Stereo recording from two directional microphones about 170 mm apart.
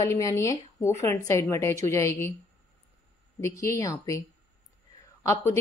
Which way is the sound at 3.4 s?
20° left (ahead or behind).